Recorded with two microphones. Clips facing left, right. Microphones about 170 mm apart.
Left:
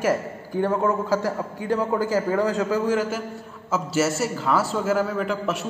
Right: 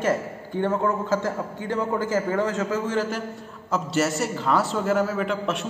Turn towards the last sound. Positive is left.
turn(degrees=0)  # may be behind; listen again after turning